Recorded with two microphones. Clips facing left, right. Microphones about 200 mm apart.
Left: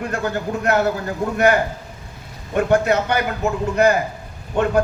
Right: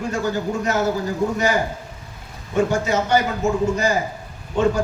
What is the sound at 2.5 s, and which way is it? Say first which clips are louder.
A man's voice: left 3 dB; 60° left (ahead or behind).